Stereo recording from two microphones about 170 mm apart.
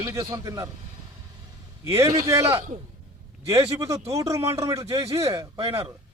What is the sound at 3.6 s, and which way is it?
A man's voice, 20° right (ahead or behind).